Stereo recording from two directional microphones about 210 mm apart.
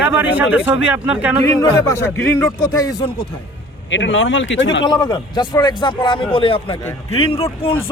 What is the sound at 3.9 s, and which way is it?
Speech, 60° left (ahead or behind).